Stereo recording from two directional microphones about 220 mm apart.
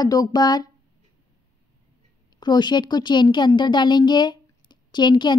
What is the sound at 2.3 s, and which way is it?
A woman's voice, 20° left (ahead or behind).